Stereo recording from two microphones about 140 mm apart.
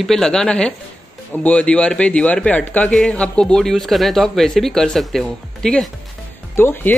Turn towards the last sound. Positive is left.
turn(degrees=15)  # may be behind; listen again after turning